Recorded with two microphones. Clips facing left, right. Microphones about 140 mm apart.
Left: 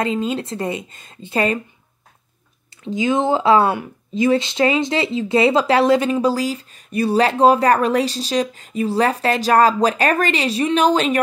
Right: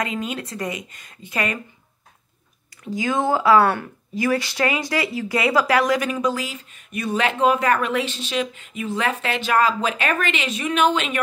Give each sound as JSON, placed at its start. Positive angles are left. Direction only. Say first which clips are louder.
{"t": 0.0, "sound": "a woman's voice", "louder": "left 6 dB", "side_deg": 30}
{"t": 2.8, "sound": "speech", "louder": "left 4 dB", "side_deg": 20}